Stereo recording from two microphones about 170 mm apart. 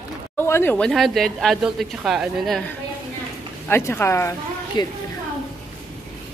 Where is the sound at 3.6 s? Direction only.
15° left (ahead or behind).